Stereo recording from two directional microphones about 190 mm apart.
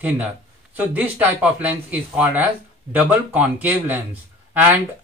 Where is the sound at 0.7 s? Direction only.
10° right (ahead or behind).